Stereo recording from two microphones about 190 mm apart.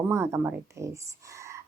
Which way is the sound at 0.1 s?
15° right (ahead or behind).